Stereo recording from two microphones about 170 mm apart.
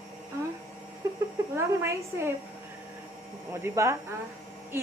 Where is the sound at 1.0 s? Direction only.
20° right (ahead or behind).